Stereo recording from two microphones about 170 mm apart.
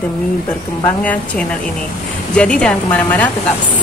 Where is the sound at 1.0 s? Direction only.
10° left (ahead or behind).